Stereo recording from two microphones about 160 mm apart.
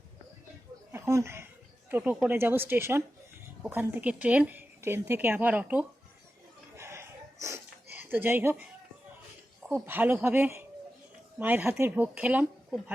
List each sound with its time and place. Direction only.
0.9 s a woman's voice: 15° right (ahead or behind)
6.7 s a sound: 15° right (ahead or behind)
9.7 s a woman's voice: 15° right (ahead or behind)